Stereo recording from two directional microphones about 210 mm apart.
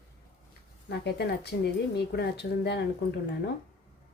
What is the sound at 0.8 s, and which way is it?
Speech, 50° left (ahead or behind).